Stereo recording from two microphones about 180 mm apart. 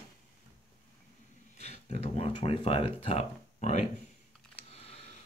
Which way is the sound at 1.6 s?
35° left (ahead or behind).